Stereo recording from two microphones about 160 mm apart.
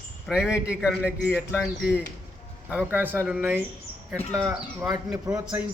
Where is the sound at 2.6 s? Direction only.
10° right (ahead or behind).